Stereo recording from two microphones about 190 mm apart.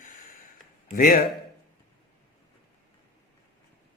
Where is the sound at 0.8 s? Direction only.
50° left (ahead or behind).